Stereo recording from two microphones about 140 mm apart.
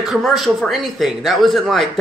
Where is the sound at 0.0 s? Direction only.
Centre (ahead or behind).